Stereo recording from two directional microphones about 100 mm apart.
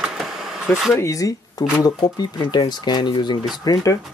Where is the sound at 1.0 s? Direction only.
35° left (ahead or behind).